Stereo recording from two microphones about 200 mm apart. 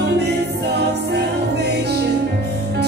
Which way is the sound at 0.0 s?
55° right (ahead or behind).